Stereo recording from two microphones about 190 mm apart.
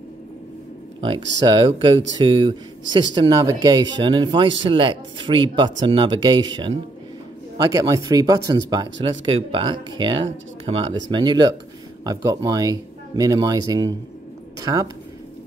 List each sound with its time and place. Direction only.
1.0 s speech: 25° right (ahead or behind)
8.9 s speech: 75° right (ahead or behind)
9.5 s a woman's voice: 25° right (ahead or behind)